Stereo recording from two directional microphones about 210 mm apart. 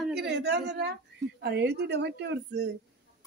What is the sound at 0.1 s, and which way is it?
A woman's voice, 50° right (ahead or behind).